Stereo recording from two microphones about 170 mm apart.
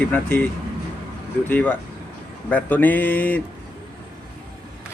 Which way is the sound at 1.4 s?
10° left (ahead or behind).